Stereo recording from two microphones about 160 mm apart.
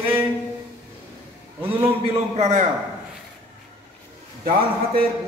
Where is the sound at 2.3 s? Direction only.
45° right (ahead or behind).